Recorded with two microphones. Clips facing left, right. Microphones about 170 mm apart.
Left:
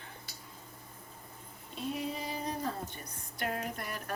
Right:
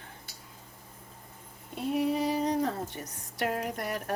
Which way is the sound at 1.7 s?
65° right (ahead or behind).